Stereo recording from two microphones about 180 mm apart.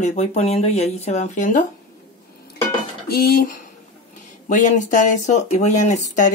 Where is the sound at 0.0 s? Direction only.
40° left (ahead or behind).